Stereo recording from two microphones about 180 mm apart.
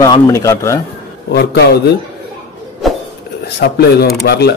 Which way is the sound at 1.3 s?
65° left (ahead or behind).